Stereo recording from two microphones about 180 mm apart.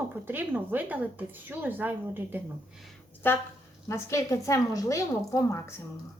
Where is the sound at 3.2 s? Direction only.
10° left (ahead or behind).